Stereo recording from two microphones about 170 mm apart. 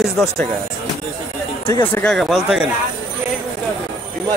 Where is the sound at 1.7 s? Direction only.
10° left (ahead or behind).